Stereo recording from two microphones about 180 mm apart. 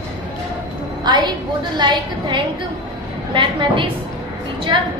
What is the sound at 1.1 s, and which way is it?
A woman's voice, 25° right (ahead or behind).